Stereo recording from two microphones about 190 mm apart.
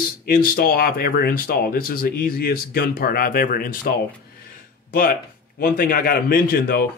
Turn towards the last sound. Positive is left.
turn(degrees=50)  # may be behind; listen again after turning